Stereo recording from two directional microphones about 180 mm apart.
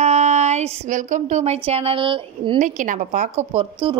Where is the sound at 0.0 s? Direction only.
40° right (ahead or behind).